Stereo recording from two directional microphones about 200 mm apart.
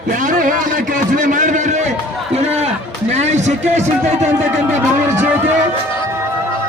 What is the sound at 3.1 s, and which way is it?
Music, 35° right (ahead or behind).